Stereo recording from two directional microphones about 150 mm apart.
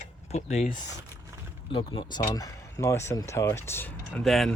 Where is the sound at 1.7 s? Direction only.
35° left (ahead or behind); by 4.2 s 15° left (ahead or behind).